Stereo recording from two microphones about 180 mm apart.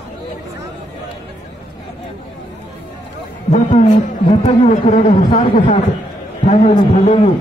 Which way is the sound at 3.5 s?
40° left (ahead or behind).